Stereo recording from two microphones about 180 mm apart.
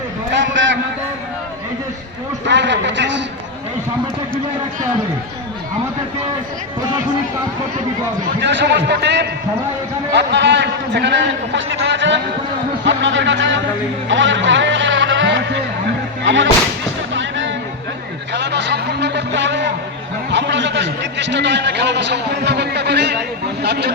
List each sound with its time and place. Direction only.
0.3 s a sound: 90° right
2.5 s a man's voice: 80° right
8.4 s a man's voice: 75° right (ahead or behind); by 13.6 s 90° right
14.1 s vehicle: 90° right
16.2 s speech: 90° right
17.2 s music: 90° right
18.3 s a sound: 75° right (ahead or behind)
20.3 s a man's voice: 80° right